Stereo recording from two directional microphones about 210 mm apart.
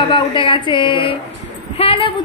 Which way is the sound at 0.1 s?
25° left (ahead or behind).